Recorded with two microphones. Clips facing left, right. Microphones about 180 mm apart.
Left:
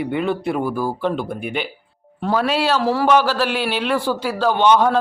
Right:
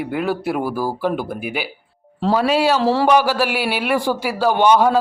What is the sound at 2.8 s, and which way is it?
Speech, 30° right (ahead or behind).